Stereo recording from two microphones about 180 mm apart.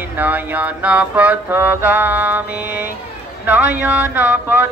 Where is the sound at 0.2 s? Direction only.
10° right (ahead or behind).